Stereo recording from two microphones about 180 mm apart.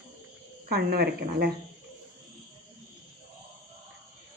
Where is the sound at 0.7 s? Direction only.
60° right (ahead or behind).